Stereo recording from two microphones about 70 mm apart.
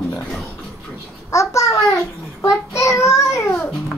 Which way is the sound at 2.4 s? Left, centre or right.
Left.